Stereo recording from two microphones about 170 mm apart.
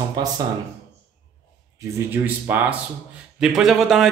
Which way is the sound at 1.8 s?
15° right (ahead or behind).